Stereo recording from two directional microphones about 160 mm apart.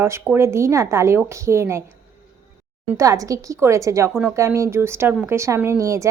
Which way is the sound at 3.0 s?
20° right (ahead or behind).